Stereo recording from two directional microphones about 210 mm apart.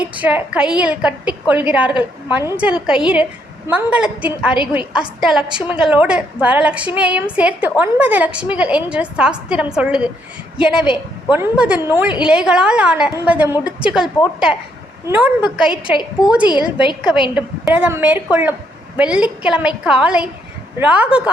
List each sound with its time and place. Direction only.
0.0 s a woman's voice: 5° right (ahead or behind)
15.7 s a woman's voice: 20° left (ahead or behind)
16.2 s a woman's voice: 5° right (ahead or behind)
16.5 s a woman's voice: 20° left (ahead or behind)
17.3 s a woman's voice: 5° right (ahead or behind)